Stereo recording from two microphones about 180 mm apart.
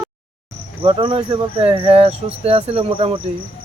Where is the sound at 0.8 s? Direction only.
30° right (ahead or behind).